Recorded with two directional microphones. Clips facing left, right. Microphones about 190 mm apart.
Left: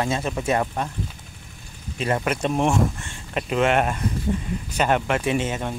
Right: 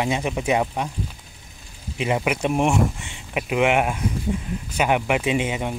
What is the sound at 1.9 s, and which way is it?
Speech, 15° right (ahead or behind).